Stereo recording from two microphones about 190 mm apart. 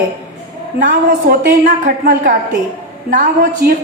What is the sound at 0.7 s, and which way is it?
A woman's voice, 45° right (ahead or behind).